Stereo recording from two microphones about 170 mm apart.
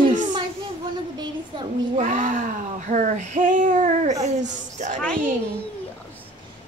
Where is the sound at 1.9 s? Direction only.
50° right (ahead or behind).